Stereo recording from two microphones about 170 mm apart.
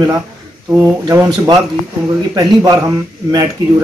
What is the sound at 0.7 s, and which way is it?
Speech, 15° right (ahead or behind).